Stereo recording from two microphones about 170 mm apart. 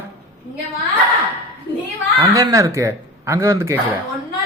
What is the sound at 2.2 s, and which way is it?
Speech, 20° right (ahead or behind).